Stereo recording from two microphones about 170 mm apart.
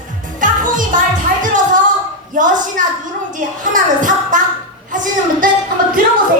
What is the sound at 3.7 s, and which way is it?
Music, 50° right (ahead or behind).